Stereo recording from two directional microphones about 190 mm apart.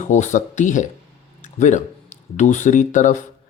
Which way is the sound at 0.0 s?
40° left (ahead or behind).